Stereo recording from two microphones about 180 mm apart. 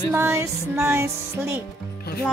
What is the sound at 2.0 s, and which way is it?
Music, 60° left (ahead or behind).